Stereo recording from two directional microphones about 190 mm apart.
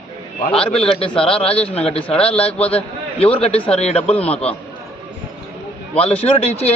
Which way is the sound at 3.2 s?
30° left (ahead or behind).